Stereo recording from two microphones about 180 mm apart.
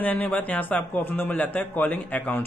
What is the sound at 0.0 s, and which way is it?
Speech, 10° left (ahead or behind).